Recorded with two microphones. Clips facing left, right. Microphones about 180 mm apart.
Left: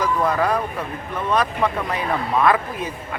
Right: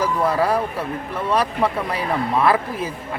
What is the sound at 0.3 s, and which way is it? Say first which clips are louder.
Speech: right 1 dB; 30° right (ahead or behind).